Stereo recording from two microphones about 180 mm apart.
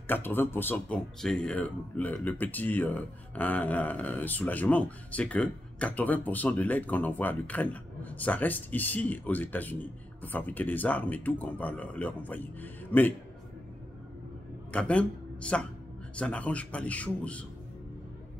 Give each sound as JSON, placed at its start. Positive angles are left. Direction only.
{"t": 0.0, "sound": "speech", "side_deg": 10}
{"t": 14.7, "sound": "a man's voice", "side_deg": 5}